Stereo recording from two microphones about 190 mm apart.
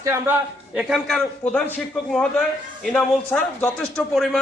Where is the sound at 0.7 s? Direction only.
Centre (ahead or behind).